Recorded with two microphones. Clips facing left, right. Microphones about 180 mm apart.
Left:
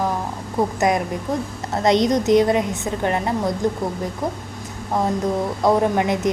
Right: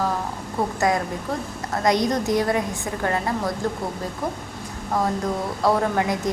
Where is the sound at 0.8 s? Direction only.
20° left (ahead or behind).